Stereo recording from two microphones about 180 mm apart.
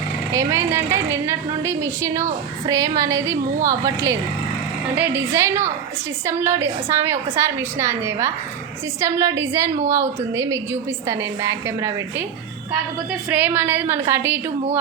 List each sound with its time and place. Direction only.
0.3 s a woman's voice: 15° right (ahead or behind)
13.3 s a woman's voice: 10° right (ahead or behind)